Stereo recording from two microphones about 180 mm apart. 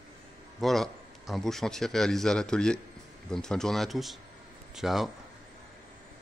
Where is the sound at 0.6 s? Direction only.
Centre (ahead or behind).